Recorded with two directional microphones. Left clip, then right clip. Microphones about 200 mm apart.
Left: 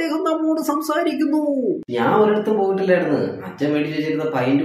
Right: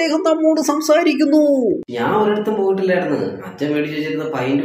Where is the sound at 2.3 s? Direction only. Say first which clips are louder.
Right 1 dB; centre (ahead or behind).